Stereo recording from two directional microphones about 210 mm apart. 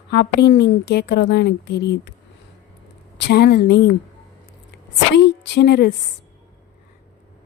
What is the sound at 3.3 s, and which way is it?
Speech, 50° left (ahead or behind).